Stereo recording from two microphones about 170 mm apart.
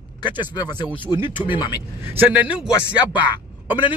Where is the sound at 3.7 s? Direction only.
30° left (ahead or behind).